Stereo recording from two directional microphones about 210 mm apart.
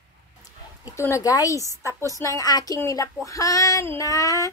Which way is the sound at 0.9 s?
15° left (ahead or behind).